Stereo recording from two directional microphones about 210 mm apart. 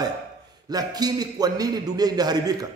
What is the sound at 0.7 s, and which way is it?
A man's voice, 20° right (ahead or behind).